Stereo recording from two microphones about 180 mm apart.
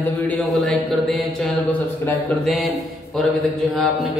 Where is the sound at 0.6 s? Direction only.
Centre (ahead or behind).